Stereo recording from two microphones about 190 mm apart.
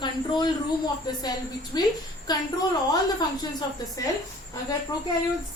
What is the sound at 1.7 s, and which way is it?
Speech, 20° left (ahead or behind).